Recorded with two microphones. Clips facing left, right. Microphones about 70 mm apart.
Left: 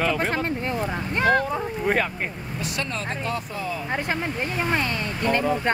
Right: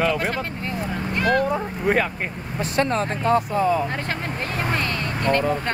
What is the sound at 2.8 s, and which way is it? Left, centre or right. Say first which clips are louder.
Speech: right 9 dB; right.